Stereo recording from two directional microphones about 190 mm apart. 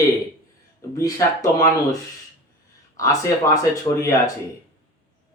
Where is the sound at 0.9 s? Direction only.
15° left (ahead or behind).